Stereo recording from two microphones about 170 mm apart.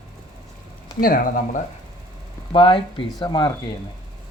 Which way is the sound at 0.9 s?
55° left (ahead or behind).